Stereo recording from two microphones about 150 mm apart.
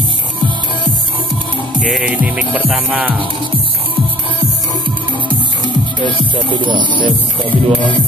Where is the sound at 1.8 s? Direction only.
5° right (ahead or behind).